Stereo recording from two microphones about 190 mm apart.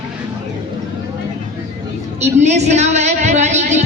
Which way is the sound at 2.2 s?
35° right (ahead or behind).